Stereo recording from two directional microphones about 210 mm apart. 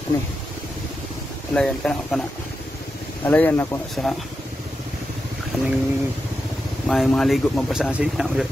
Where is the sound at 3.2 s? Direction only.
10° left (ahead or behind).